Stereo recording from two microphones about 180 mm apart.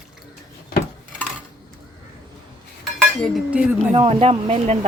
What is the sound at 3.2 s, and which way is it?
Speech, centre (ahead or behind).